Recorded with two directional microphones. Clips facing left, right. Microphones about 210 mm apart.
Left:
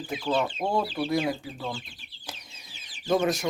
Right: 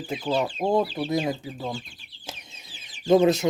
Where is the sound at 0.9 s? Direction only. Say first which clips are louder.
Right 1 dB; 20° right (ahead or behind).